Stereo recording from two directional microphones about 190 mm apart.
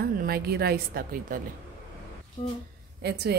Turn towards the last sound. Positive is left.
turn(degrees=-60)  # may be behind; listen again after turning